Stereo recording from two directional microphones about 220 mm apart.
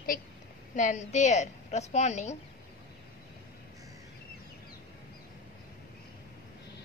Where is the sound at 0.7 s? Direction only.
35° left (ahead or behind).